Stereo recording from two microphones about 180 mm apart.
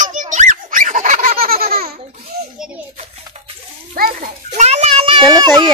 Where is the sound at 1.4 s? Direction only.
55° right (ahead or behind).